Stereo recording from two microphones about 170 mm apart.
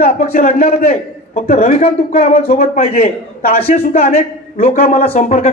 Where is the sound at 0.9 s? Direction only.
40° left (ahead or behind).